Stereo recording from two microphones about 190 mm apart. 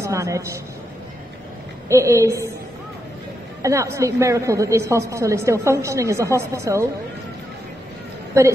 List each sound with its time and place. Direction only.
0.0 s a woman's voice: 15° right (ahead or behind)
1.9 s a woman's voice: 15° right (ahead or behind)
3.6 s a woman's voice: 15° right (ahead or behind)